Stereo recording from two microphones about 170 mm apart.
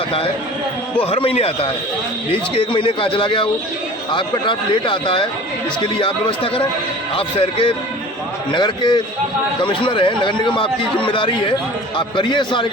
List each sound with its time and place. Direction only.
1.0 s a man's voice: 35° left (ahead or behind)